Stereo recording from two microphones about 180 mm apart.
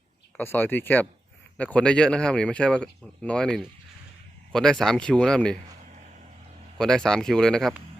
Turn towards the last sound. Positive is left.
turn(degrees=5)  # may be behind; listen again after turning